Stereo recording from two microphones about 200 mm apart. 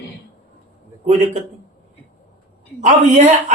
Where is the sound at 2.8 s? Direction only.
35° right (ahead or behind).